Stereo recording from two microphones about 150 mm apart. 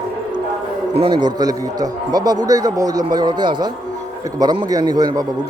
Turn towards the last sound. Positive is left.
turn(degrees=-25)  # may be behind; listen again after turning